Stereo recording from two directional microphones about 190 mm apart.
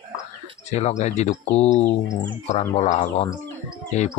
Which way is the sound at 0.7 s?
35° left (ahead or behind).